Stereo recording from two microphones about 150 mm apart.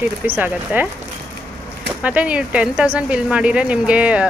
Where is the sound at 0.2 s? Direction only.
10° right (ahead or behind).